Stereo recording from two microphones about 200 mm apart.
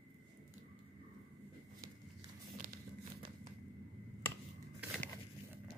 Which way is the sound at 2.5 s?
40° right (ahead or behind).